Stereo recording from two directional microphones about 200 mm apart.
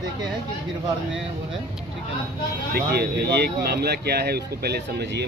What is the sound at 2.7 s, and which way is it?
Speech, 55° right (ahead or behind).